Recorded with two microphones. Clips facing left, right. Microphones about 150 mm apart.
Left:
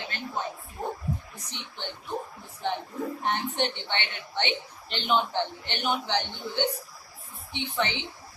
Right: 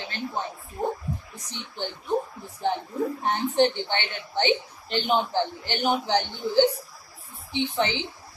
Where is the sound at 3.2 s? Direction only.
35° right (ahead or behind).